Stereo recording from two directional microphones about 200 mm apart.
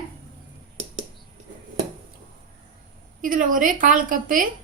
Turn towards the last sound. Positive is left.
turn(degrees=-40)  # may be behind; listen again after turning